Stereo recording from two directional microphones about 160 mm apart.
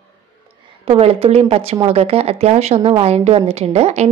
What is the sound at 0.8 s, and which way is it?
A woman's voice, 40° right (ahead or behind).